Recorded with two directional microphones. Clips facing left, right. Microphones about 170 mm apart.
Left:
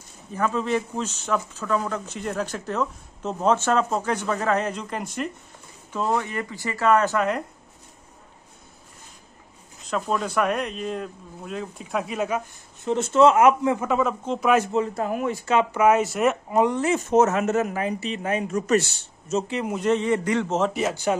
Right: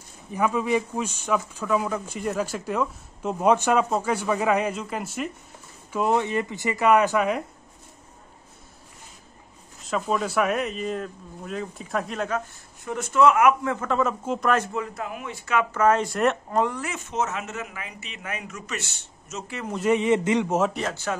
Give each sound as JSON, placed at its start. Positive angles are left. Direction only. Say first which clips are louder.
{"t": 0.3, "sound": "speech", "louder": "right 1 dB", "side_deg": -10}
{"t": 5.9, "sound": "speech", "louder": "right 2 dB", "side_deg": -20}
{"t": 9.8, "sound": "speech", "louder": "even", "side_deg": 0}
{"t": 12.8, "sound": "speech", "louder": "left 3 dB", "side_deg": 25}
{"t": 13.7, "sound": "speech", "louder": "left 1 dB", "side_deg": 5}
{"t": 14.7, "sound": "speech", "louder": "left 6 dB", "side_deg": 25}
{"t": 15.0, "sound": "speech", "louder": "left 9 dB", "side_deg": 40}
{"t": 15.7, "sound": "speech", "louder": "right 1 dB", "side_deg": 10}
{"t": 16.7, "sound": "speech", "louder": "left 10 dB", "side_deg": 25}
{"t": 17.0, "sound": "speech", "louder": "left 9 dB", "side_deg": 45}
{"t": 20.0, "sound": "speech", "louder": "right 1 dB", "side_deg": -20}
{"t": 20.7, "sound": "speech", "louder": "left 5 dB", "side_deg": 10}